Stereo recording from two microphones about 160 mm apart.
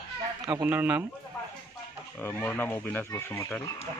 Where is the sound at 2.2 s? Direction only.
15° left (ahead or behind).